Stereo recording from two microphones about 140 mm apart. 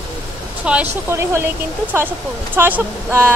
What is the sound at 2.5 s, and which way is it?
Speech, 15° right (ahead or behind).